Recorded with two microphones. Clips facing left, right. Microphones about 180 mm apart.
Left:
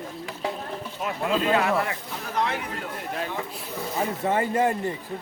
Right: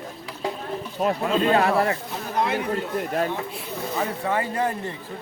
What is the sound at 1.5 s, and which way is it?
Speech, 35° right (ahead or behind).